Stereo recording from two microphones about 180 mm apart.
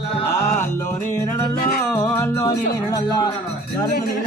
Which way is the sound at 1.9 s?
15° left (ahead or behind).